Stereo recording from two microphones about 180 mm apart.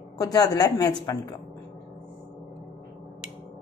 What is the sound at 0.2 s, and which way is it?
Speech, 20° left (ahead or behind).